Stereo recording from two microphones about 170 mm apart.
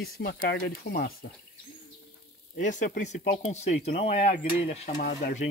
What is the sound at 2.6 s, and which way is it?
Speech, 45° left (ahead or behind).